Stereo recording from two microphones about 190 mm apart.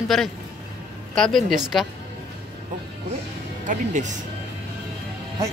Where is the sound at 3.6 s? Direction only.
40° right (ahead or behind).